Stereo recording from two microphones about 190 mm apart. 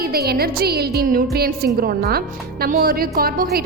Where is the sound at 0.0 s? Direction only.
55° right (ahead or behind).